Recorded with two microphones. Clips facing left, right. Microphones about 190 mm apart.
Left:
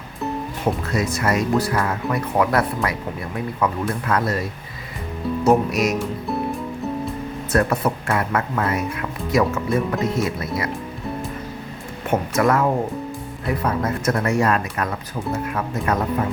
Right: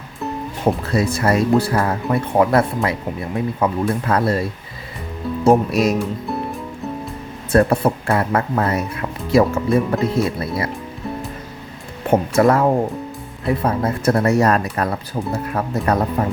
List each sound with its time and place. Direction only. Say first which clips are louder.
0.9 s speech: right 4 dB; 30° right (ahead or behind)
6.0 s music: right 2 dB; centre (ahead or behind)
7.5 s speech: right 5 dB; 30° right (ahead or behind)
12.1 s speech: right 4 dB; 30° right (ahead or behind)